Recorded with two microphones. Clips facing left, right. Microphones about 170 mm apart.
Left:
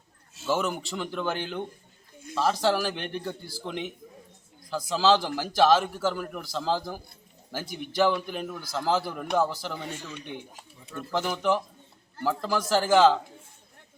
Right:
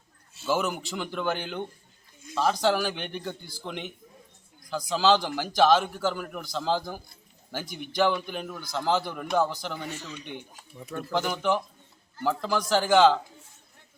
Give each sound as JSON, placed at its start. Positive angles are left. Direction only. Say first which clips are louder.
{"t": 0.4, "sound": "a man's voice", "louder": "even", "side_deg": 0}